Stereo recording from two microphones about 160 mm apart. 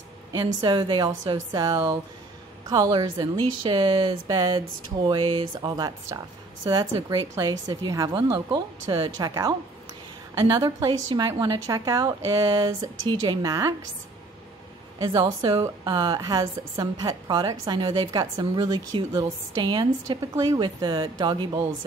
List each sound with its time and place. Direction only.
0.3 s a woman's voice: 25° right (ahead or behind)
15.0 s a woman's voice: 25° right (ahead or behind)